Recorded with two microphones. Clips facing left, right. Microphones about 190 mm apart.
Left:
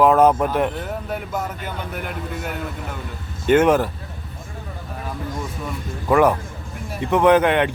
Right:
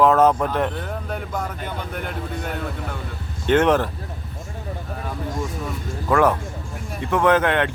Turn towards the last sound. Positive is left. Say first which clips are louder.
# left 3 dB
turn(degrees=15)  # may be behind; listen again after turning